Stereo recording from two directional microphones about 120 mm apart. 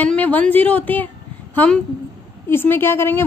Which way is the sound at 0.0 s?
15° left (ahead or behind).